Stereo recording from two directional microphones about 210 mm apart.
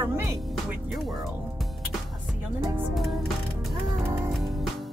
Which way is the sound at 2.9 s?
Centre (ahead or behind).